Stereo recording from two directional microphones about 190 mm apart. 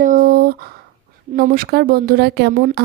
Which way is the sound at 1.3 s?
45° right (ahead or behind).